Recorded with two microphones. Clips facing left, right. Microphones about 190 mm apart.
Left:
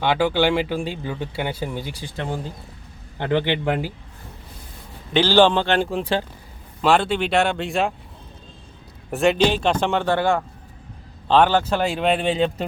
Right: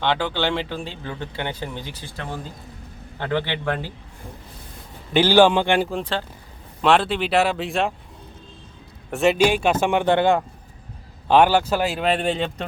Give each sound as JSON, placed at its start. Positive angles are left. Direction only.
{"t": 0.0, "sound": "speech", "side_deg": 10}
{"t": 3.2, "sound": "speech", "side_deg": 15}
{"t": 5.1, "sound": "a man's voice", "side_deg": -10}
{"t": 5.9, "sound": "speech", "side_deg": 10}
{"t": 9.0, "sound": "a man's voice", "side_deg": 0}